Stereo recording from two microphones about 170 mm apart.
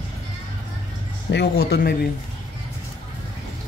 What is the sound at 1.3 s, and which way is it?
Speech, 70° left (ahead or behind).